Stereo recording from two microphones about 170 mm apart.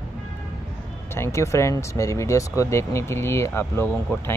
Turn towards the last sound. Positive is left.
turn(degrees=15)  # may be behind; listen again after turning